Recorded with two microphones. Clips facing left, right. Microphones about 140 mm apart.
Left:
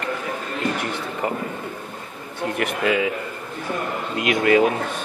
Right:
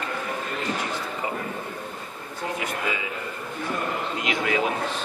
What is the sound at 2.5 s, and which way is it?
Speech, 70° left (ahead or behind).